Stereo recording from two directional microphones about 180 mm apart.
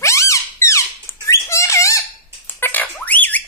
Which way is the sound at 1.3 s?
15° left (ahead or behind).